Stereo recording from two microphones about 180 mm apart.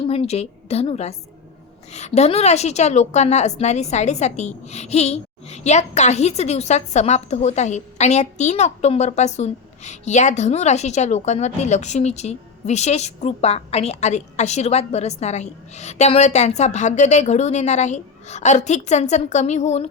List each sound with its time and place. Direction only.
0.0 s a woman's voice: 30° left (ahead or behind)